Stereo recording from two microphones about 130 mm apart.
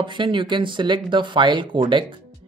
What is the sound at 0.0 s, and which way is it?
Speech, 40° right (ahead or behind).